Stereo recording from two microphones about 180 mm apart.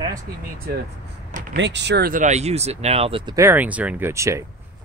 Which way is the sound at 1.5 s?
80° right.